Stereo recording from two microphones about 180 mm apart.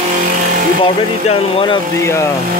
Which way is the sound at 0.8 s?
30° left (ahead or behind).